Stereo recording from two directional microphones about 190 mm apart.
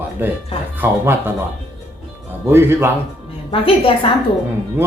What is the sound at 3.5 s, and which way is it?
Speech, 30° left (ahead or behind).